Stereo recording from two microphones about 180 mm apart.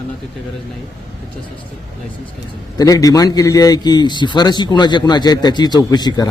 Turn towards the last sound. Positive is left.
turn(degrees=25)  # may be behind; listen again after turning